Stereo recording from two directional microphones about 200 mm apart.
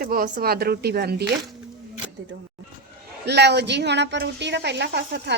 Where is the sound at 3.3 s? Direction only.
55° right (ahead or behind).